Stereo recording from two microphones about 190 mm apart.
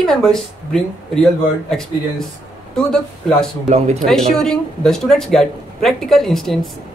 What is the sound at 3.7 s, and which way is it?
Speech, 35° right (ahead or behind).